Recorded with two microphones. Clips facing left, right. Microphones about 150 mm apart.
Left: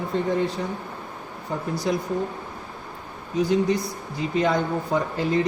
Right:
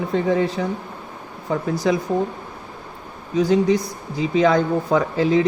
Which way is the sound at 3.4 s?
90° right.